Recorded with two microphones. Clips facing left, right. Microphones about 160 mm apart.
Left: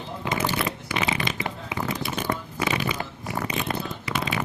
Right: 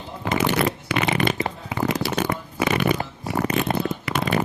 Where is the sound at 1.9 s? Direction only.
75° right (ahead or behind).